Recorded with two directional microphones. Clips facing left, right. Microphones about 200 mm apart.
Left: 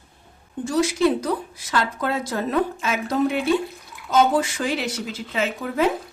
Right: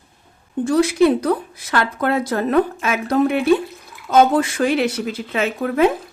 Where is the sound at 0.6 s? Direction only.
60° right (ahead or behind).